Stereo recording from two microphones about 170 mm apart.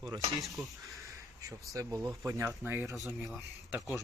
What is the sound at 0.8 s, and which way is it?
Crow, 20° right (ahead or behind).